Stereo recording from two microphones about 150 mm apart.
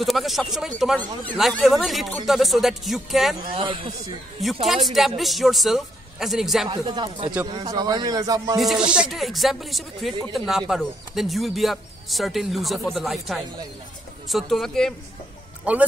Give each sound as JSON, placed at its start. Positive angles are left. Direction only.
{"t": 0.0, "sound": "speech", "side_deg": 0}
{"t": 3.5, "sound": "speech", "side_deg": -35}
{"t": 4.6, "sound": "speech", "side_deg": 0}
{"t": 6.7, "sound": "a man's voice", "side_deg": -30}
{"t": 8.5, "sound": "speech", "side_deg": 0}
{"t": 15.7, "sound": "speech", "side_deg": -10}